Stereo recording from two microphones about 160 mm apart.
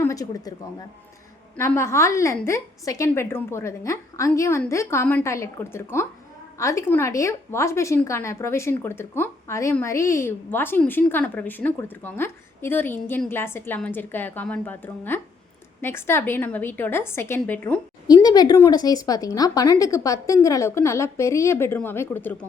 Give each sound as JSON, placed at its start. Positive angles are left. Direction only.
{"t": 0.0, "sound": "speech", "side_deg": 20}
{"t": 1.5, "sound": "a woman's voice", "side_deg": 15}
{"t": 18.1, "sound": "speech", "side_deg": 25}